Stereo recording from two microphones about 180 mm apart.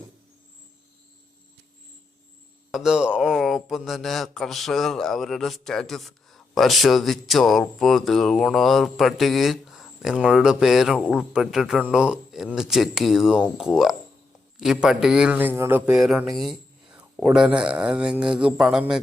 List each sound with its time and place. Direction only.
2.7 s speech: 5° right (ahead or behind)